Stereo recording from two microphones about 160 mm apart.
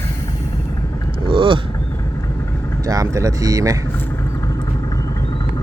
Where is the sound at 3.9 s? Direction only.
10° left (ahead or behind).